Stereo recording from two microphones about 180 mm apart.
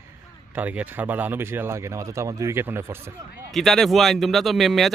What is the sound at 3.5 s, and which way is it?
Speech, centre (ahead or behind).